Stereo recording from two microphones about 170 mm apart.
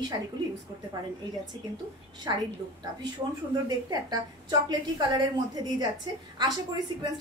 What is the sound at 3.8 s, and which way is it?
A woman's voice, 25° right (ahead or behind).